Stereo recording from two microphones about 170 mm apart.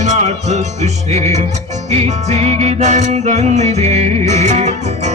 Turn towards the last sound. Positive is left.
turn(degrees=-45)  # may be behind; listen again after turning